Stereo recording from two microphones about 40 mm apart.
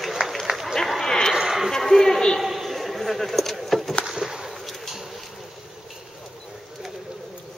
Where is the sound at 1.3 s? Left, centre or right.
Centre.